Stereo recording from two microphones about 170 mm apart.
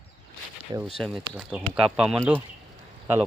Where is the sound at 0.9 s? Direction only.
Centre (ahead or behind).